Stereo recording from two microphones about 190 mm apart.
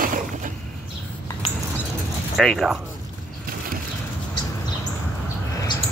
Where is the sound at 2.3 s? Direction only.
Centre (ahead or behind).